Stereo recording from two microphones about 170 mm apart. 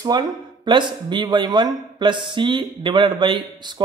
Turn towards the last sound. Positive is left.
turn(degrees=-25)  # may be behind; listen again after turning